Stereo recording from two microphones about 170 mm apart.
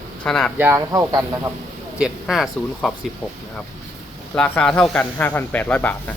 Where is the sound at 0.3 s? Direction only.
5° left (ahead or behind).